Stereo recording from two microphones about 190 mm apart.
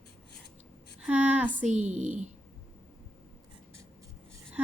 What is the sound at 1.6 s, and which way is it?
Speech, 40° right (ahead or behind).